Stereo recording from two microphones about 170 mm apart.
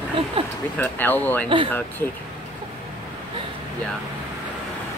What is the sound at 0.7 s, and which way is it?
Speech, 10° left (ahead or behind).